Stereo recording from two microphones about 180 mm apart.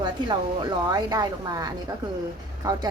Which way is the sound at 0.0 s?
25° right (ahead or behind).